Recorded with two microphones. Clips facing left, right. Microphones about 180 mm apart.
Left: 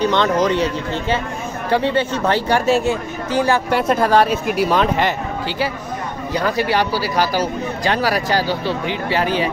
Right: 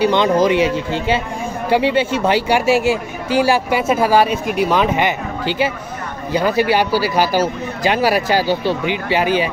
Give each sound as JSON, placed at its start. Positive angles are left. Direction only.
{"t": 0.0, "sound": "speech", "side_deg": -15}
{"t": 7.3, "sound": "speech", "side_deg": -25}
{"t": 8.8, "sound": "speech", "side_deg": -5}